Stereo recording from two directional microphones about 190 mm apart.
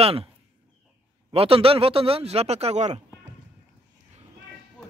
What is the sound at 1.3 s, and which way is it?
A man's voice, 30° right (ahead or behind).